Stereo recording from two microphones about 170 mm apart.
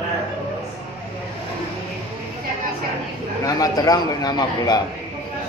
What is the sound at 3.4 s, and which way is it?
A man's voice, 20° left (ahead or behind).